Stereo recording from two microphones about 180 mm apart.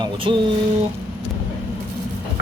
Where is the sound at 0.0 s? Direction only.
30° right (ahead or behind).